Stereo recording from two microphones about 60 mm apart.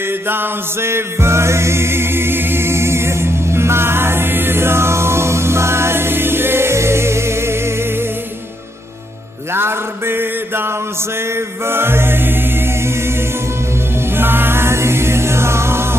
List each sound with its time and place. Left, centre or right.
0.0 s music: right
9.5 s mantra: right
11.3 s music: right